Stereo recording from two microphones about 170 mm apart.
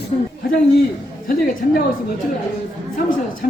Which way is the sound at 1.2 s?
55° left (ahead or behind).